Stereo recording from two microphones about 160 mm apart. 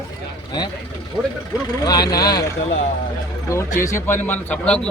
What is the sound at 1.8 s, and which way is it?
Speech, 25° left (ahead or behind).